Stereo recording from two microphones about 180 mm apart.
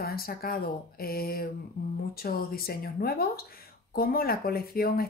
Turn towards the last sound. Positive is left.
turn(degrees=55)  # may be behind; listen again after turning